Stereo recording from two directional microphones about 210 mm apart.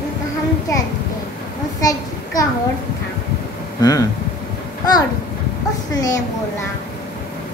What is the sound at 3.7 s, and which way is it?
Speech, 15° left (ahead or behind).